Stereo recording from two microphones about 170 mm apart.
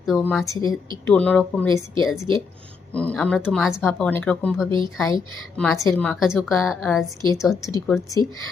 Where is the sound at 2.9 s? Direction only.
5° left (ahead or behind).